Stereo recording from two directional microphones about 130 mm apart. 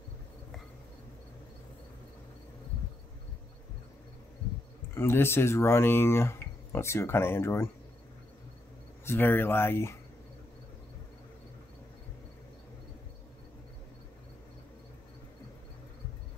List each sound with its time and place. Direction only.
4.9 s speech: 20° left (ahead or behind)
9.0 s speech: 15° left (ahead or behind)